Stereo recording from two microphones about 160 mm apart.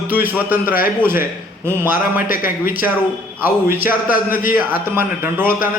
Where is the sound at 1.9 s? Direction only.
60° left (ahead or behind).